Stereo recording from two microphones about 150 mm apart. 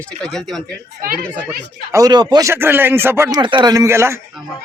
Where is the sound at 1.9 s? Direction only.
25° right (ahead or behind).